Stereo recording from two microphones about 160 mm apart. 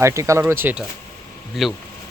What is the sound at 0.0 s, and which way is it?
Speech, 20° right (ahead or behind).